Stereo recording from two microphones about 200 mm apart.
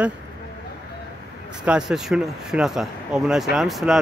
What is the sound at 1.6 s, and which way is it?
Speech, 5° right (ahead or behind).